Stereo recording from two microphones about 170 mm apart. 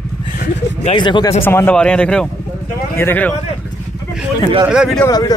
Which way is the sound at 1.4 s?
10° left (ahead or behind).